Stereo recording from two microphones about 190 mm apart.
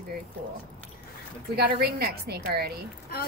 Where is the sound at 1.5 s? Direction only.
55° right (ahead or behind).